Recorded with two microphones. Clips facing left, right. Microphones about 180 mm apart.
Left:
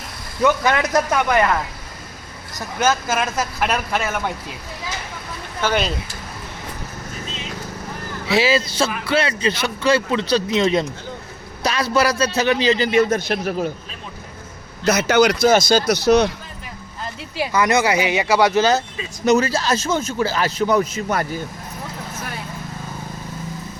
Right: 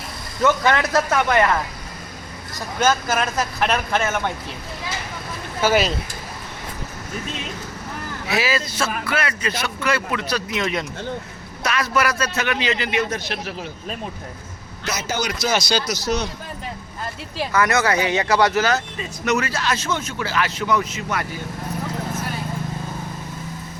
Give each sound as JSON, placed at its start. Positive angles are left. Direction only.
{"t": 0.4, "sound": "speech", "side_deg": 15}
{"t": 2.8, "sound": "speech", "side_deg": 10}
{"t": 5.5, "sound": "speech", "side_deg": -5}
{"t": 8.3, "sound": "a man's voice", "side_deg": 30}
{"t": 14.8, "sound": "a man's voice", "side_deg": 65}
{"t": 17.3, "sound": "speech", "side_deg": 15}
{"t": 19.2, "sound": "a man's voice", "side_deg": 35}